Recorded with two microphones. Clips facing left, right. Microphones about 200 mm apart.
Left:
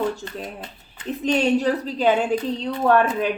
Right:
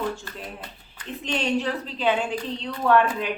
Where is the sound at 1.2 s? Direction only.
40° left (ahead or behind).